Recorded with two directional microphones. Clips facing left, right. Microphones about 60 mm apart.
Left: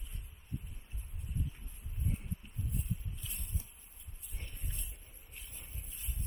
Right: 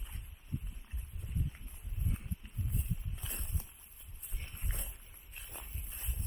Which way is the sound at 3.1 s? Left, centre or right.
Right.